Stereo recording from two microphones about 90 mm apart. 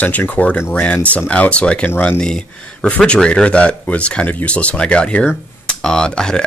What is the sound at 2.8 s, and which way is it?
Speech, 10° left (ahead or behind).